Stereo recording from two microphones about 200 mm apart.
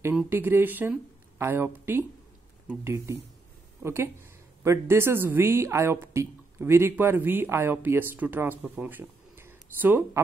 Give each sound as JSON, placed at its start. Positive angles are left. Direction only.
{"t": 0.0, "sound": "speech", "side_deg": -10}